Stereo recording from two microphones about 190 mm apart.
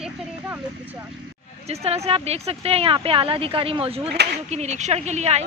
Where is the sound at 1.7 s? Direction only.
35° right (ahead or behind).